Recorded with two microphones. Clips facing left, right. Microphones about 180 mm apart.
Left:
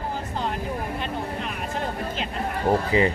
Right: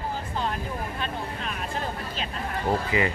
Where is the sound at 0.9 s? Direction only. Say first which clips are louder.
Left 3 dB; 15° left (ahead or behind).